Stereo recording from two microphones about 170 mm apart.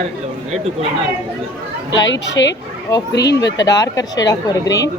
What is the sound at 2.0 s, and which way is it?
Speech, 90° left.